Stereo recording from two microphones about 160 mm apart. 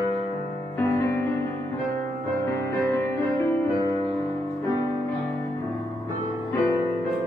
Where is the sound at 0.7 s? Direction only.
15° left (ahead or behind).